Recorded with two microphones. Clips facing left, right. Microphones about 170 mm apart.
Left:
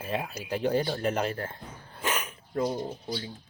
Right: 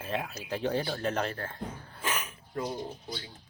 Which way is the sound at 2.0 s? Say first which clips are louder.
Left 4 dB; 20° left (ahead or behind).